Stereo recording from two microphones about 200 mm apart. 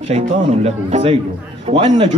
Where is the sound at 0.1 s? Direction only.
30° right (ahead or behind).